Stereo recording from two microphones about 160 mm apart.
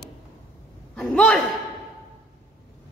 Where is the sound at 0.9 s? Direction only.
5° left (ahead or behind).